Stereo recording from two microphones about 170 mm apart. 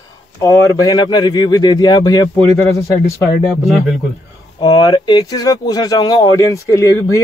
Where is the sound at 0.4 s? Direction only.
20° left (ahead or behind).